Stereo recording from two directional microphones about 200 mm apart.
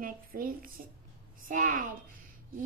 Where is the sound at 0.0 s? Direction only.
45° right (ahead or behind).